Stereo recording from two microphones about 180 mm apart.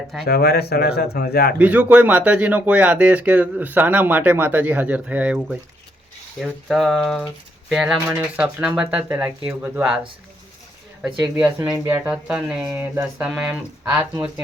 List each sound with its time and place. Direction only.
0.3 s speech: 60° left (ahead or behind)
1.5 s speech: 10° right (ahead or behind)
11.7 s speech: 15° right (ahead or behind)